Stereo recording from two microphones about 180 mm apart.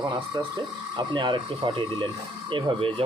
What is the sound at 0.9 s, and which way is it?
Speech, 25° right (ahead or behind).